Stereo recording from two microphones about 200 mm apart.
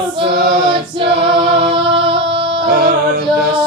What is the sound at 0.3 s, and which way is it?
Choir, 55° right (ahead or behind).